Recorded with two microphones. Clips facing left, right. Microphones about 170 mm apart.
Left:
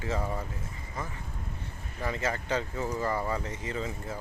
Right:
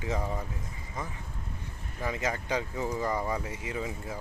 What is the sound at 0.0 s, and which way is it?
Speech, 15° right (ahead or behind).